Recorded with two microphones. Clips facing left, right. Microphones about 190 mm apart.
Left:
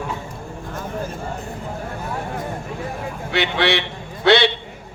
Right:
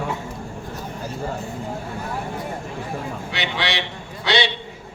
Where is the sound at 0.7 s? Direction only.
50° left (ahead or behind).